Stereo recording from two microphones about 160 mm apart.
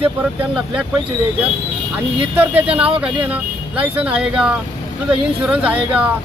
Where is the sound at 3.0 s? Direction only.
10° right (ahead or behind).